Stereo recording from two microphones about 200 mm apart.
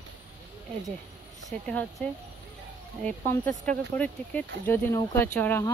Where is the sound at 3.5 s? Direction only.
40° right (ahead or behind).